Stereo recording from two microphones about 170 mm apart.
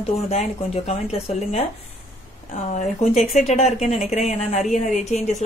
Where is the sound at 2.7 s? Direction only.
45° left (ahead or behind).